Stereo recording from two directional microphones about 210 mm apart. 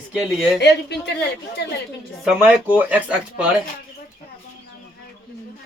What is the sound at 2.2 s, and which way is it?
Speech, 5° right (ahead or behind).